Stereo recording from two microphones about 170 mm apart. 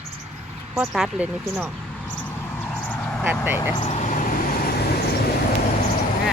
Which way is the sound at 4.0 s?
50° left (ahead or behind).